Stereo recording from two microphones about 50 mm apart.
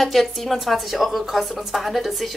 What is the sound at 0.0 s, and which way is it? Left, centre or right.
Speech, centre.